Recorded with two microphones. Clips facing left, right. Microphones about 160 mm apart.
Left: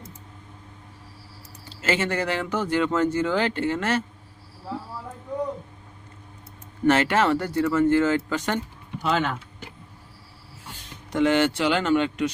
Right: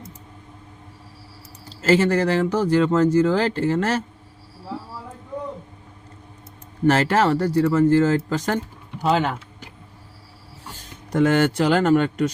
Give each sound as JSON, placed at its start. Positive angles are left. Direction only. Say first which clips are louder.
{"t": 1.7, "sound": "speech", "louder": "right 7 dB", "side_deg": -35}
{"t": 6.8, "sound": "speech", "louder": "right 2 dB", "side_deg": -35}
{"t": 11.1, "sound": "speech", "louder": "right 2 dB", "side_deg": -45}